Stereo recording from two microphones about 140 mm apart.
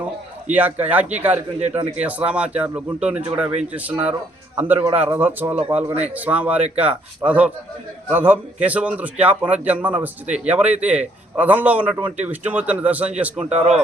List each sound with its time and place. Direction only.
0.5 s speech: 10° right (ahead or behind)